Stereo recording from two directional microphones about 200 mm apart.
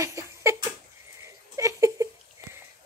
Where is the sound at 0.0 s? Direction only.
15° right (ahead or behind).